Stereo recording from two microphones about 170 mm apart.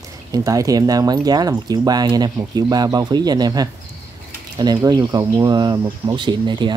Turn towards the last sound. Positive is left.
turn(degrees=-25)  # may be behind; listen again after turning